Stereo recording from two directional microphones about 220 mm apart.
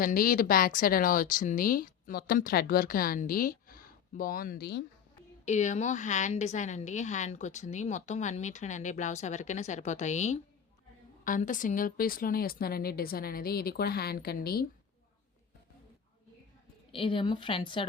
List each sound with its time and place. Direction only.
0.0 s a woman's voice: 40° left (ahead or behind)
5.5 s a woman's voice: 30° left (ahead or behind)
16.9 s a woman's voice: 25° left (ahead or behind)